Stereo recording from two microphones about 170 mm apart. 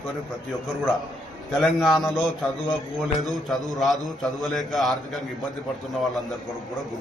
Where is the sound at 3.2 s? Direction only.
Centre (ahead or behind).